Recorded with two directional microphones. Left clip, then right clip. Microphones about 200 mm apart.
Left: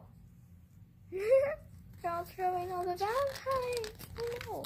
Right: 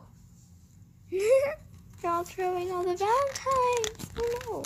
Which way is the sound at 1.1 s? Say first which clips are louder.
Right 4 dB; 40° right (ahead or behind).